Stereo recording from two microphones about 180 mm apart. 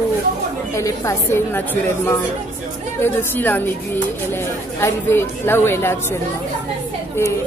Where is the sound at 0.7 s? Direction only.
15° left (ahead or behind).